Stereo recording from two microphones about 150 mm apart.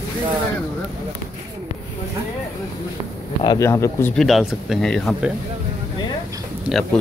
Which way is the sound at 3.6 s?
20° left (ahead or behind).